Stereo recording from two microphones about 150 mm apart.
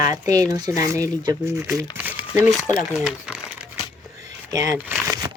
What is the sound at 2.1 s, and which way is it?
Crumpling, 10° right (ahead or behind).